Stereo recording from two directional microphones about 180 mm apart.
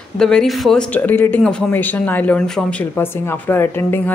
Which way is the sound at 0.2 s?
5° left (ahead or behind).